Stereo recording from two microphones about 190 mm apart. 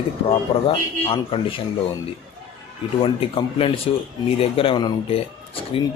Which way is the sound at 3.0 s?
30° left (ahead or behind).